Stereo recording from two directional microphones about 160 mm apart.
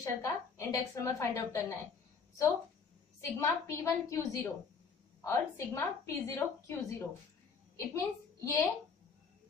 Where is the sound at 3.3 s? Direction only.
20° left (ahead or behind).